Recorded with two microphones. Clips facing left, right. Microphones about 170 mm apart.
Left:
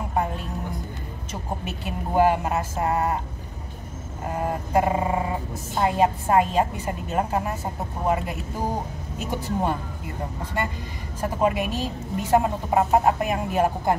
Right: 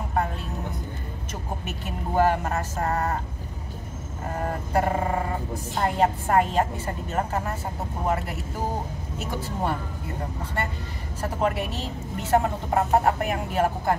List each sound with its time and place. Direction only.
1.7 s a woman's voice: 15° left (ahead or behind)
4.3 s a woman's voice: 15° left (ahead or behind)
9.2 s a woman's voice: 15° left (ahead or behind)
11.1 s a woman's voice: 15° left (ahead or behind)